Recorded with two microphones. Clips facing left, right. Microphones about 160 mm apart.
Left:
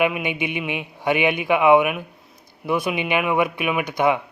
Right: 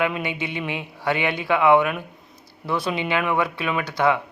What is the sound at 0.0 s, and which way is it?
A man's voice, 15° left (ahead or behind).